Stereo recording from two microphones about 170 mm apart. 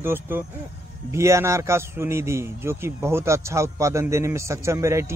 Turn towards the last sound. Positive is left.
turn(degrees=-15)  # may be behind; listen again after turning